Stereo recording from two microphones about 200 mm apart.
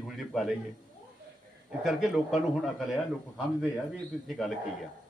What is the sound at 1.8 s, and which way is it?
A man's voice, centre (ahead or behind).